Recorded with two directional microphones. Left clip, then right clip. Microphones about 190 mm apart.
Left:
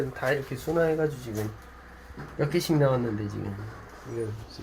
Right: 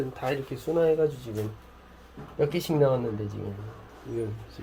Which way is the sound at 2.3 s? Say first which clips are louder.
Right 1 dB; 20° left (ahead or behind).